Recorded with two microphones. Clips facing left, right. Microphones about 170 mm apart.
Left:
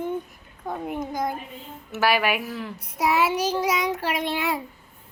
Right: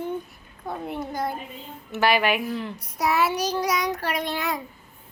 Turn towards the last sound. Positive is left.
turn(degrees=25)  # may be behind; listen again after turning